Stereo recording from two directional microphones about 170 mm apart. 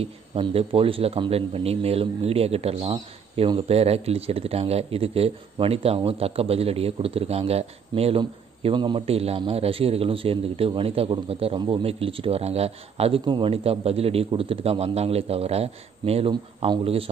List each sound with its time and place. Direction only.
0.0 s speech: 35° right (ahead or behind)